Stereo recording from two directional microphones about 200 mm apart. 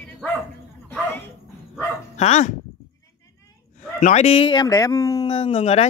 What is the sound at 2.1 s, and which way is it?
Speech, 35° left (ahead or behind).